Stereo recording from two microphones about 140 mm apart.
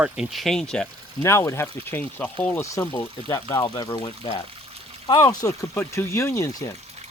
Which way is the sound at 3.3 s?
25° left (ahead or behind).